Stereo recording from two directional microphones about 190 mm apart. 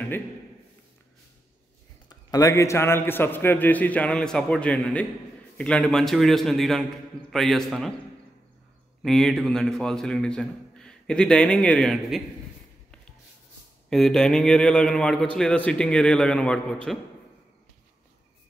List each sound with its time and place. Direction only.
2.0 s a man's voice: 20° left (ahead or behind); by 7.9 s centre (ahead or behind)
9.0 s a man's voice: centre (ahead or behind)
13.8 s a man's voice: 5° left (ahead or behind)